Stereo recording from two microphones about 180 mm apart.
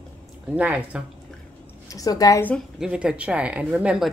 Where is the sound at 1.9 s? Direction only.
20° left (ahead or behind).